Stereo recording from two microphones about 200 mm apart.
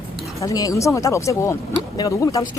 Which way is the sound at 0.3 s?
15° left (ahead or behind).